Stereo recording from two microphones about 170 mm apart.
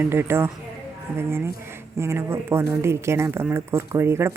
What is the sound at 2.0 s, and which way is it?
Speech, 15° right (ahead or behind).